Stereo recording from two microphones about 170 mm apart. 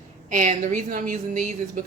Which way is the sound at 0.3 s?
50° right (ahead or behind).